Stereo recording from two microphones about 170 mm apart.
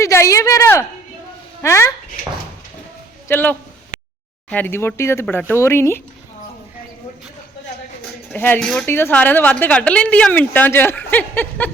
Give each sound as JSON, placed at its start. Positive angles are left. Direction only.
{"t": 0.0, "sound": "a woman's voice", "side_deg": 15}
{"t": 3.2, "sound": "a woman's voice", "side_deg": 10}
{"t": 8.3, "sound": "a woman's voice", "side_deg": 5}